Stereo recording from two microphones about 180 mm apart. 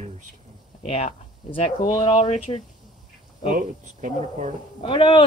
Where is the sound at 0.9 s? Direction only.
35° left (ahead or behind).